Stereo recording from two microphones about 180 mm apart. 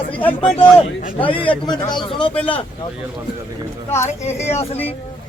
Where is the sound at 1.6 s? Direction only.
25° left (ahead or behind).